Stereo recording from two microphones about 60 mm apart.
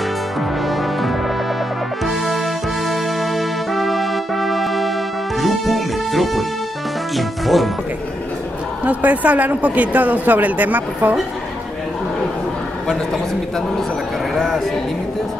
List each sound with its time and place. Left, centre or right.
2.9 s music: centre
7.2 s speech: centre
8.8 s speech: right